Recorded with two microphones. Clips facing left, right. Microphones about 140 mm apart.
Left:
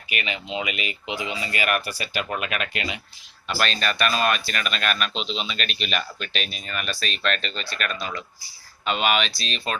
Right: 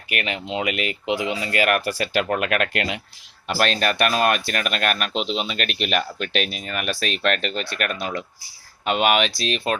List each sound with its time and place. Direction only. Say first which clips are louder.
0.1 s speech: right 3 dB; 60° right (ahead or behind); by 2.2 s 90° right
2.3 s speech: right 6 dB; 70° right (ahead or behind)
3.4 s speech: right 4 dB; 55° right (ahead or behind)